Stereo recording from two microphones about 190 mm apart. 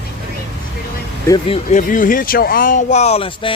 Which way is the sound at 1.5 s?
40° left (ahead or behind).